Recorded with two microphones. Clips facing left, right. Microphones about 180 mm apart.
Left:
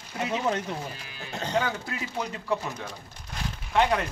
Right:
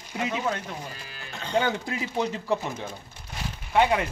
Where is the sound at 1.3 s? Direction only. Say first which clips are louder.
Right 1 dB; 40° left (ahead or behind).